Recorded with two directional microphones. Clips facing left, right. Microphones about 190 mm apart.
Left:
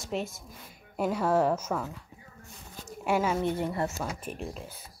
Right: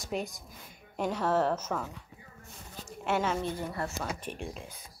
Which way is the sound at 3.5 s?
25° left (ahead or behind).